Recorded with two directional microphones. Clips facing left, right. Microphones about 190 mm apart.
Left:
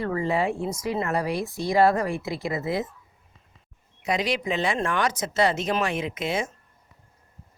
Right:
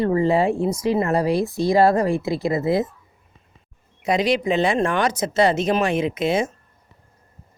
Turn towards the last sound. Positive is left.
turn(degrees=-25)  # may be behind; listen again after turning